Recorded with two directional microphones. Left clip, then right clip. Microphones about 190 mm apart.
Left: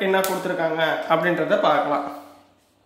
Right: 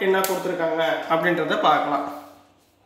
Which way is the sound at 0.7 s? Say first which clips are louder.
Left 2 dB; 35° left (ahead or behind).